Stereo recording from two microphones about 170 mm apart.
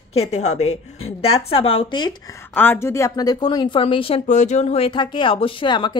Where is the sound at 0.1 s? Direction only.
40° left (ahead or behind).